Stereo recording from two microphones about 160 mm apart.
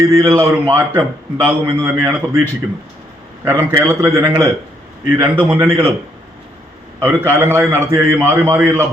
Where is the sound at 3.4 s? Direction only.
15° right (ahead or behind).